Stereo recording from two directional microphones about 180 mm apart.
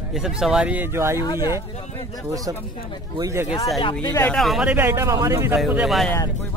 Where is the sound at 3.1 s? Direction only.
15° right (ahead or behind).